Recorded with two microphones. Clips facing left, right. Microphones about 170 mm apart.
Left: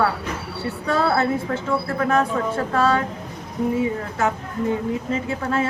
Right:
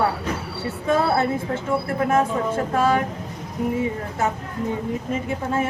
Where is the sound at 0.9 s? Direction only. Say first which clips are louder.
Even; 20° right (ahead or behind).